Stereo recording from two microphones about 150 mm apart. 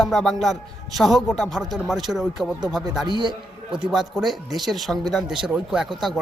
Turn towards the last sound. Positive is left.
turn(degrees=0)  # may be behind; listen again after turning